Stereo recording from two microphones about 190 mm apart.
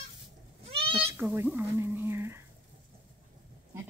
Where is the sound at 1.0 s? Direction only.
10° right (ahead or behind).